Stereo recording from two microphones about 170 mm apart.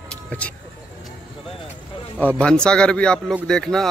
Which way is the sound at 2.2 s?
5° left (ahead or behind).